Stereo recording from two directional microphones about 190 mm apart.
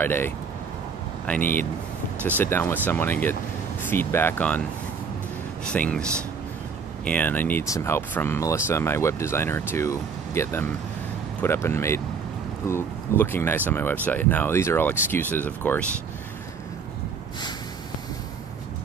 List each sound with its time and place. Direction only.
0.0 s speech: 10° left (ahead or behind)
5.7 s speech: 5° left (ahead or behind)
7.1 s speech: 10° left (ahead or behind)